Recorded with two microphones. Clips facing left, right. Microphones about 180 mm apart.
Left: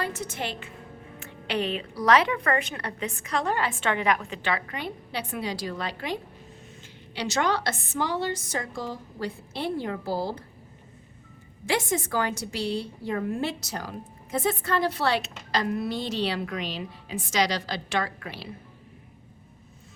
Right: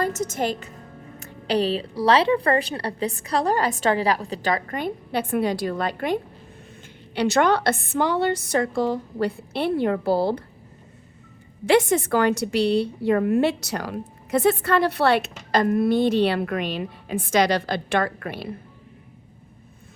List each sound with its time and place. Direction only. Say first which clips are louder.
0.0 s a woman's voice: right 7 dB; 45° right (ahead or behind)
7.2 s a woman's voice: right 7 dB; 60° right (ahead or behind)
11.6 s a woman's voice: right 9 dB; 65° right (ahead or behind)